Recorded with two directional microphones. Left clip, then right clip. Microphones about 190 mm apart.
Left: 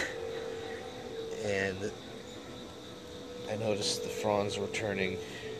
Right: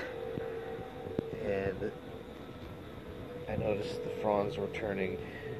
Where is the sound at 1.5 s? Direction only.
10° left (ahead or behind).